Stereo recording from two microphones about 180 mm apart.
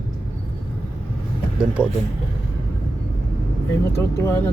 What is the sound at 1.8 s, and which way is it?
Speech, 5° right (ahead or behind).